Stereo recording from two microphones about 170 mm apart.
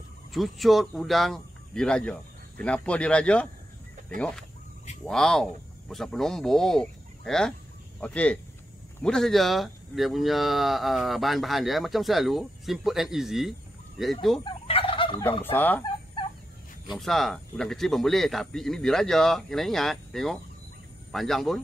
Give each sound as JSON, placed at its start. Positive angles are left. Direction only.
{"t": 0.3, "sound": "speech", "side_deg": 0}
{"t": 14.4, "sound": "fowl", "side_deg": 30}
{"t": 15.5, "sound": "speech", "side_deg": 10}
{"t": 16.9, "sound": "speech", "side_deg": 0}